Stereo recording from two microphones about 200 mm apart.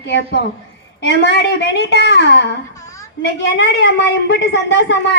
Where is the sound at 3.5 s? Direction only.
65° left (ahead or behind).